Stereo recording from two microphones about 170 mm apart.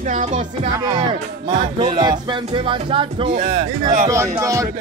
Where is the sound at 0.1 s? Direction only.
45° right (ahead or behind).